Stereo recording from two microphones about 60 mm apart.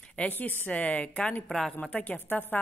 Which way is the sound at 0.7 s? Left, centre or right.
Centre.